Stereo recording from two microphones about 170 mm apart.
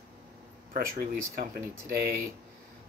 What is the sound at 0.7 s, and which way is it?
Speech, 55° right (ahead or behind).